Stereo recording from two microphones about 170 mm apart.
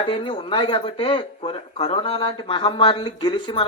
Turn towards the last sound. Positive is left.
turn(degrees=30)  # may be behind; listen again after turning